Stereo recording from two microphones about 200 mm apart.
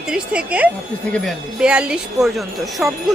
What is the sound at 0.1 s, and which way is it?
Wind chime, 5° right (ahead or behind).